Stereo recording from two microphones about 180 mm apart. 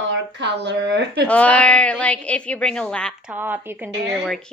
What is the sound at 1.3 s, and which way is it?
A woman's voice, 5° left (ahead or behind).